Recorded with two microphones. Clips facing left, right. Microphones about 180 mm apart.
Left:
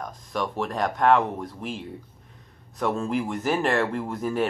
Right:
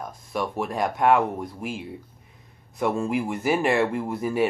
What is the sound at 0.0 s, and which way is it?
Speech, 10° right (ahead or behind).